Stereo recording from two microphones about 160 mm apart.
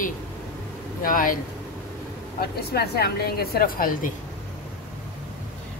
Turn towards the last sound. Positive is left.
turn(degrees=60)  # may be behind; listen again after turning